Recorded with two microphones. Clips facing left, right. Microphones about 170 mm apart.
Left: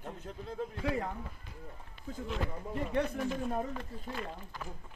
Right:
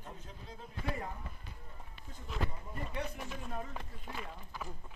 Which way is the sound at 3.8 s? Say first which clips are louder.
Left 5 dB; 5° right (ahead or behind).